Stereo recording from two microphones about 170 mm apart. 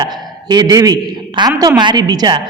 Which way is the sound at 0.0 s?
20° right (ahead or behind).